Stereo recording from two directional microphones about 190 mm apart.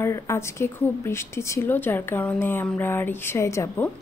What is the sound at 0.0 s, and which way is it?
A woman's voice, 15° left (ahead or behind).